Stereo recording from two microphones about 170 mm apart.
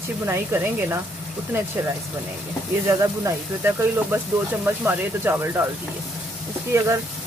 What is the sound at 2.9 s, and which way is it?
Speech, 15° right (ahead or behind).